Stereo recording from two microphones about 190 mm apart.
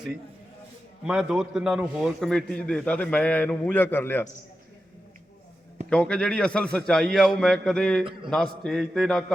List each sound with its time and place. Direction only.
1.0 s a man's voice: 5° right (ahead or behind); by 4.3 s 10° left (ahead or behind)
5.9 s a man's voice: 5° left (ahead or behind)